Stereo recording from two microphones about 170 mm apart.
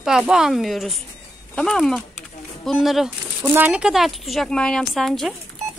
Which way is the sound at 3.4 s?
10° right (ahead or behind).